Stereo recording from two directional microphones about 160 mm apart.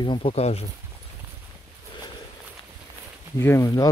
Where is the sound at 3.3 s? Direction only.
15° left (ahead or behind).